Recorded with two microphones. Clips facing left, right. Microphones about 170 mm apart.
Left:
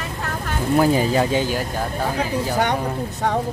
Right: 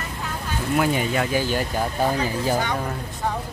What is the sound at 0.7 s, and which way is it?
Speech, 35° left (ahead or behind).